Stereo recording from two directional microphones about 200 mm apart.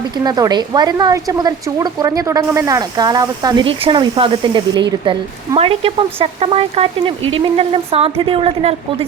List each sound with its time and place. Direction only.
0.3 s a woman's voice: 20° right (ahead or behind)